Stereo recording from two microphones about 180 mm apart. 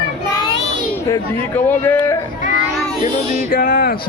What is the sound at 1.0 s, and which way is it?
Speech, 15° left (ahead or behind).